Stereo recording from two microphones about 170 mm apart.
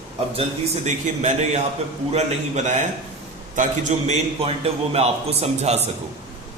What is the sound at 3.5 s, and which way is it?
A man's voice, 45° right (ahead or behind).